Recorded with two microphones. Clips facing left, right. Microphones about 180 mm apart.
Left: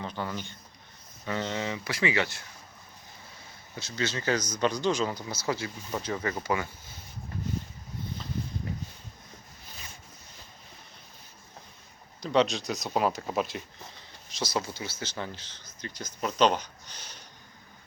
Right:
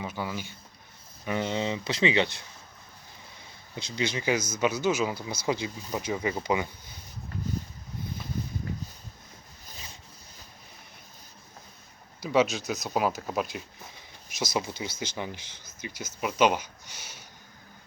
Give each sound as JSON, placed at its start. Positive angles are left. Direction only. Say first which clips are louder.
{"t": 0.0, "sound": "speech", "louder": "right 1 dB", "side_deg": -10}
{"t": 3.8, "sound": "speech", "louder": "right 2 dB", "side_deg": -15}
{"t": 12.2, "sound": "speech", "louder": "right 1 dB", "side_deg": -5}
{"t": 13.9, "sound": "speech", "louder": "right 1 dB", "side_deg": -10}